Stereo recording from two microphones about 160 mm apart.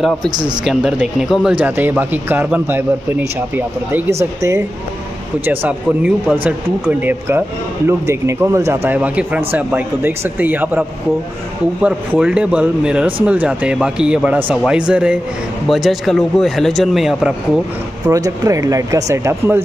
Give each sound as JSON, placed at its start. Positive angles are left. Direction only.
{"t": 0.7, "sound": "a man's voice", "side_deg": 0}
{"t": 18.0, "sound": "speech", "side_deg": -20}